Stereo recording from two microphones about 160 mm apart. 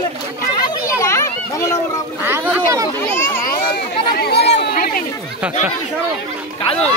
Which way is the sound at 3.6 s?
70° left (ahead or behind).